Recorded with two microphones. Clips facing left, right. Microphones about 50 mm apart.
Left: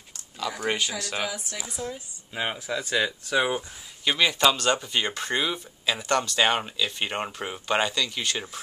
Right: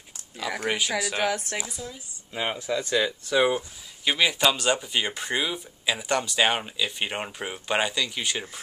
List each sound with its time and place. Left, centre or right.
0.7 s speech: centre
1.1 s speech: right
2.3 s speech: centre